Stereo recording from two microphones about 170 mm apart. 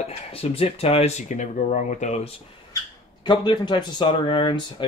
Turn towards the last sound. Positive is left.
turn(degrees=30)  # may be behind; listen again after turning